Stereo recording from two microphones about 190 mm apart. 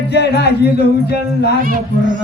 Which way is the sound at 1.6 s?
40° right (ahead or behind).